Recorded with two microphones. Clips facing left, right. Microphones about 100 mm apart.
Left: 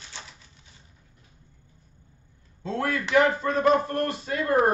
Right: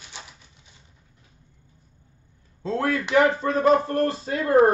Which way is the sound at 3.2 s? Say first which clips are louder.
Right 2 dB; 30° right (ahead or behind).